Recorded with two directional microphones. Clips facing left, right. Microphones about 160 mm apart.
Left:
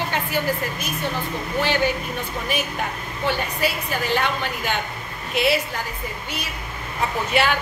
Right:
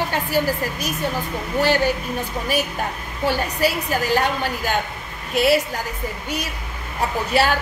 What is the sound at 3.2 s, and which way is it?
A woman's voice, 40° right (ahead or behind).